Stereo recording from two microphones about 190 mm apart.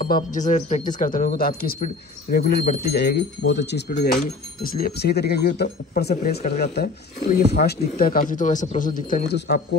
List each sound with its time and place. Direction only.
0.0 s speech: 45° left (ahead or behind)